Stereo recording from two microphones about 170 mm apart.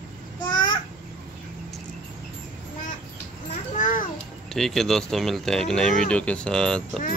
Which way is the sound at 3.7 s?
50° left (ahead or behind).